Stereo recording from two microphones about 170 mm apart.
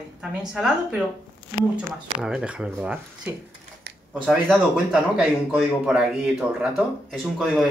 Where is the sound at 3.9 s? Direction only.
75° right (ahead or behind).